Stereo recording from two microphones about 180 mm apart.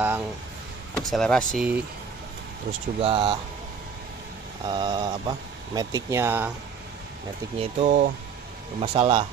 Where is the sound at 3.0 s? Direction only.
30° right (ahead or behind).